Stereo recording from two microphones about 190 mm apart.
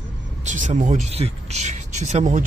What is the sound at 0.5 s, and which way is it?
Speech, 40° right (ahead or behind).